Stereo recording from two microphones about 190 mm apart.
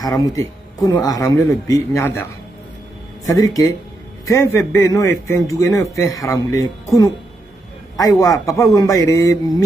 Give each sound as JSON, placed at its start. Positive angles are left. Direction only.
{"t": 0.0, "sound": "a man's voice", "side_deg": 20}
{"t": 3.3, "sound": "a man's voice", "side_deg": 20}
{"t": 8.0, "sound": "a man's voice", "side_deg": 20}